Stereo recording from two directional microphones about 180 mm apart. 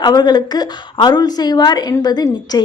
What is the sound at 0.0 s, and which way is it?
A woman's voice, 25° left (ahead or behind).